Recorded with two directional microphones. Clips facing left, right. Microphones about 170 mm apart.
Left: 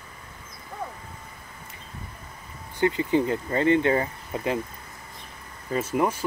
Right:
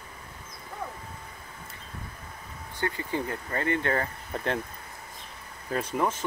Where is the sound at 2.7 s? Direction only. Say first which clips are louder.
Left 8 dB; 20° left (ahead or behind).